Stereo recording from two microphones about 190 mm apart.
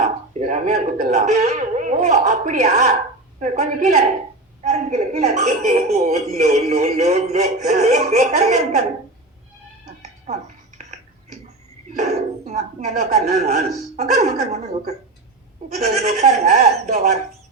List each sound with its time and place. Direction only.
0.0 s a woman's voice: 35° right (ahead or behind)
9.8 s music: 35° right (ahead or behind)
11.9 s a woman's voice: 35° right (ahead or behind)